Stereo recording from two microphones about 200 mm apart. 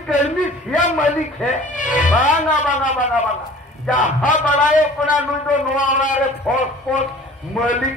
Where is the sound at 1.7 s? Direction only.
40° left (ahead or behind).